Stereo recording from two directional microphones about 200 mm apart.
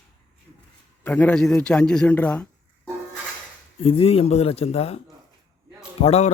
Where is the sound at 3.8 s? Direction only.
30° left (ahead or behind).